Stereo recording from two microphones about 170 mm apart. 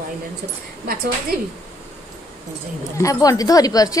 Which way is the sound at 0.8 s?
60° right (ahead or behind).